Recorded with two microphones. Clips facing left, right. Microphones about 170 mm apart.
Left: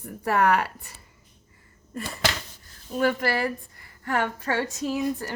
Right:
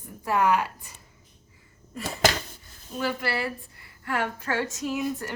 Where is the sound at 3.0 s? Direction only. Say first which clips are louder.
Left 5 dB; 45° left (ahead or behind).